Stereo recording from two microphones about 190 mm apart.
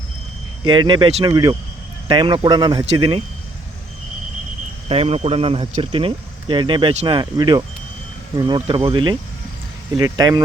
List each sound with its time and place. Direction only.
0.6 s speech: 25° right (ahead or behind)
4.9 s speech: 30° right (ahead or behind)